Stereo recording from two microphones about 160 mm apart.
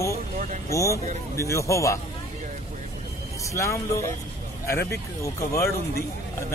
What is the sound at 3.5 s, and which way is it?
Speech, 20° left (ahead or behind).